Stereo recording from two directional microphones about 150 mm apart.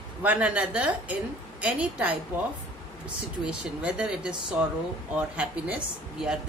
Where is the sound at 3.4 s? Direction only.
5° right (ahead or behind).